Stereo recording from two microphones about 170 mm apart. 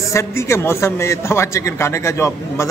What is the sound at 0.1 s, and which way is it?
A man's voice, 15° left (ahead or behind).